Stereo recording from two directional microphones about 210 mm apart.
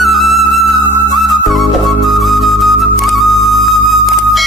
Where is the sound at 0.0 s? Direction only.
Centre (ahead or behind).